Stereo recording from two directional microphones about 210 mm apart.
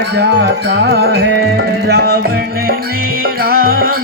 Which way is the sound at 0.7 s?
55° right (ahead or behind).